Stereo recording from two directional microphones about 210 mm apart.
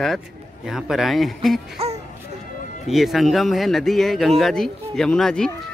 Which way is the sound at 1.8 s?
30° right (ahead or behind).